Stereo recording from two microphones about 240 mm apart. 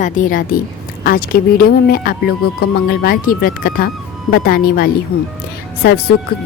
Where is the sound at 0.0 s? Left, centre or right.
Left.